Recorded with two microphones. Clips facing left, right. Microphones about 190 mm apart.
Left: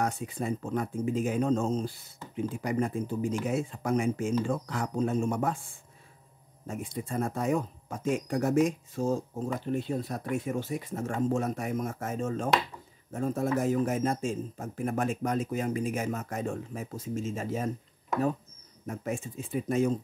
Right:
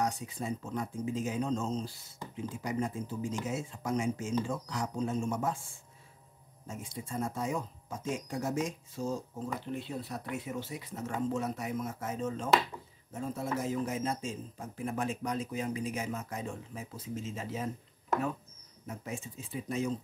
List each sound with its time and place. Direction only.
0.0 s speech: 55° left (ahead or behind)
6.7 s speech: 60° left (ahead or behind)
18.9 s speech: 55° left (ahead or behind)